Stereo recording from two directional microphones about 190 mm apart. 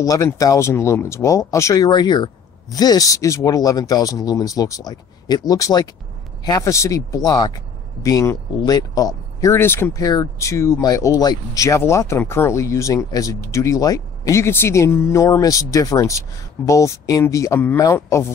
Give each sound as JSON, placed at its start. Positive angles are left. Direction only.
{"t": 0.0, "sound": "speech", "side_deg": 20}